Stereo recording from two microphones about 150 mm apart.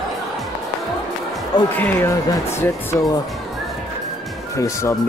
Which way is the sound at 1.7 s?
15° left (ahead or behind).